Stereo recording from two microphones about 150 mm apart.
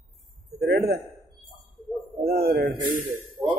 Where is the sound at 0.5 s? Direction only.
90° right.